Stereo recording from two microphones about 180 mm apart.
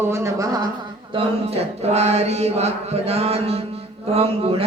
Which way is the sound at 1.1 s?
30° right (ahead or behind).